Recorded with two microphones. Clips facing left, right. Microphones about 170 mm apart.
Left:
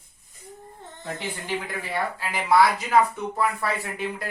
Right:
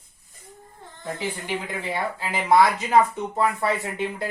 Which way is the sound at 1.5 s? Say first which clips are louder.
Left 2 dB; 20° right (ahead or behind).